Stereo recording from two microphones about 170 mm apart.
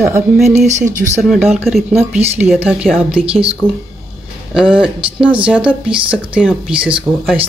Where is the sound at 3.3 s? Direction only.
35° right (ahead or behind).